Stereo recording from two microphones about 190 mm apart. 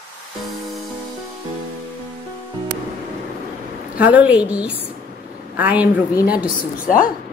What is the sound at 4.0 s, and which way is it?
A woman's voice, 10° right (ahead or behind).